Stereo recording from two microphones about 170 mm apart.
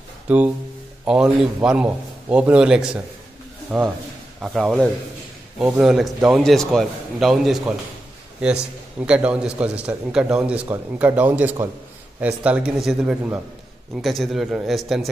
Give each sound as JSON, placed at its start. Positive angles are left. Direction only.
{"t": 0.3, "sound": "a man's voice", "side_deg": -10}
{"t": 9.0, "sound": "a man's voice", "side_deg": -5}